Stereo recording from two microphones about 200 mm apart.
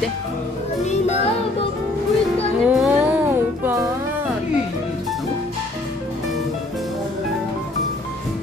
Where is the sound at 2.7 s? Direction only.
5° right (ahead or behind).